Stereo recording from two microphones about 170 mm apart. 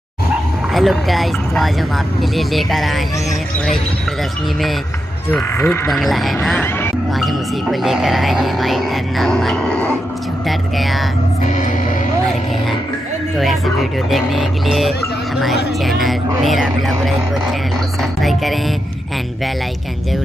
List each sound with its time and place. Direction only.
0.7 s speech: centre (ahead or behind)
5.3 s speech: 10° left (ahead or behind)
11.4 s music: 45° left (ahead or behind)
14.1 s speech: centre (ahead or behind)